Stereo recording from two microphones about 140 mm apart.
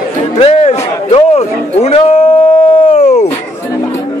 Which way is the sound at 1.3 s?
50° left (ahead or behind).